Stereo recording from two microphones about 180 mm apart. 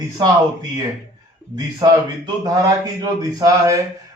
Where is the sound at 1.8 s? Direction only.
20° right (ahead or behind).